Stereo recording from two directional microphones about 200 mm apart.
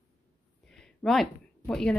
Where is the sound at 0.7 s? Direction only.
Centre (ahead or behind).